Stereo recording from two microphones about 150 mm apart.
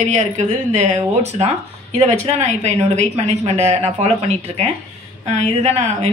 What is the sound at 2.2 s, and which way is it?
A woman's voice, 50° right (ahead or behind).